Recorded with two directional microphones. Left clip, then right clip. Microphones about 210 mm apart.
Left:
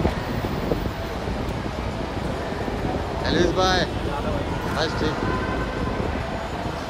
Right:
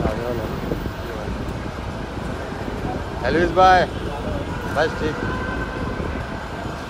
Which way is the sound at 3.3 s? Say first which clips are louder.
Right 7 dB; 25° right (ahead or behind).